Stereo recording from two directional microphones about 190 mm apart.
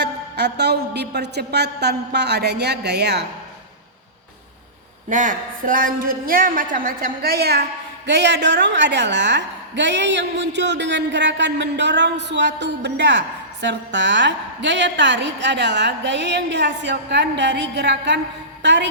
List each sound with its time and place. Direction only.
0.0 s a woman's voice: 60° right (ahead or behind)
5.0 s a woman's voice: 45° right (ahead or behind); by 18.9 s 65° right (ahead or behind)